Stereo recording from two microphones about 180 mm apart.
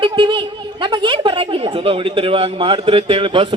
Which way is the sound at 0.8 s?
30° right (ahead or behind).